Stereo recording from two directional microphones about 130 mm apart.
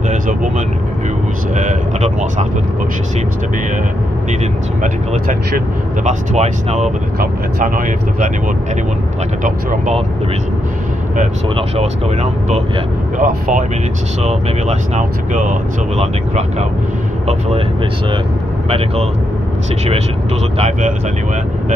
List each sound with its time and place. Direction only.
0.1 s vehicle: 75° right (ahead or behind)
1.5 s speech: 70° right (ahead or behind)
6.0 s speech: 60° right (ahead or behind)
7.6 s speech: 90° right
9.4 s speech: 90° right
11.5 s speech: 55° right (ahead or behind)
13.2 s speech: 75° right (ahead or behind)
14.2 s speech: 60° right (ahead or behind)
16.0 s speech: 60° right (ahead or behind)
20.5 s speech: 55° right (ahead or behind)